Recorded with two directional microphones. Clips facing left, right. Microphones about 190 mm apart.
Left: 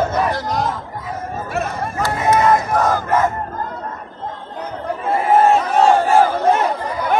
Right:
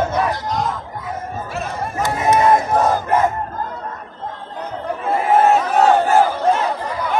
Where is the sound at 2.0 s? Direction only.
20° right (ahead or behind).